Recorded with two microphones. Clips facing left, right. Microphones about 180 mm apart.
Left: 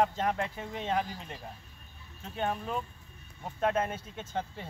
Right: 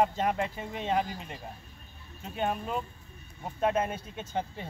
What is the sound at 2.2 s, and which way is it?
Speech, 15° right (ahead or behind).